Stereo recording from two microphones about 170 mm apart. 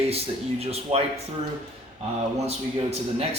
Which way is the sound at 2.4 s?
40° right (ahead or behind).